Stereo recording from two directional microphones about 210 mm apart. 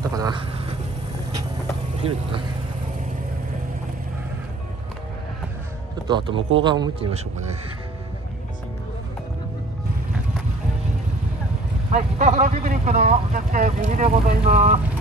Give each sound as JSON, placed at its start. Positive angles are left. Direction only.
{"t": 0.1, "sound": "speech", "side_deg": -20}
{"t": 2.0, "sound": "speech", "side_deg": -30}
{"t": 6.0, "sound": "speech", "side_deg": -20}
{"t": 11.9, "sound": "speech", "side_deg": -35}